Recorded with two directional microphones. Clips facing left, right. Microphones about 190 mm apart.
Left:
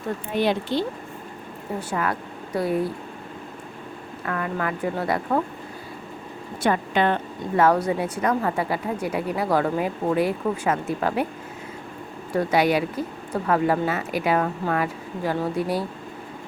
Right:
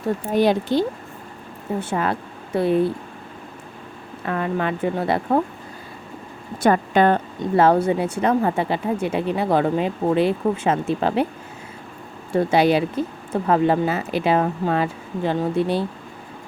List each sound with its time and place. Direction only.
0.3 s speech: 40° right (ahead or behind)
1.8 s speech: 25° right (ahead or behind)
4.3 s speech: 25° right (ahead or behind)
6.6 s a woman's voice: 45° right (ahead or behind)
7.6 s speech: 30° right (ahead or behind)
12.3 s speech: 25° right (ahead or behind)